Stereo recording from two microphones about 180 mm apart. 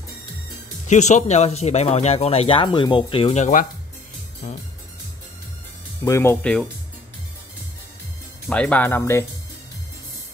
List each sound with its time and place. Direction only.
0.8 s speech: 40° left (ahead or behind)
4.4 s music: 40° left (ahead or behind)
6.0 s speech: 15° left (ahead or behind)
8.5 s speech: 5° left (ahead or behind)